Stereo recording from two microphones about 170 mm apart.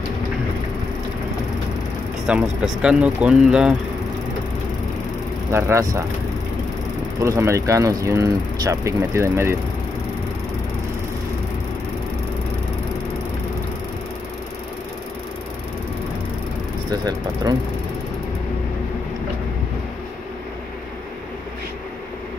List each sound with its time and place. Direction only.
2.2 s speech: 5° right (ahead or behind)
5.5 s speech: 15° right (ahead or behind)
7.2 s speech: 20° right (ahead or behind)
17.0 s speech: 25° right (ahead or behind)